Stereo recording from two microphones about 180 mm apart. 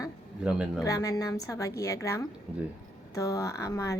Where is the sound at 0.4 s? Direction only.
5° right (ahead or behind).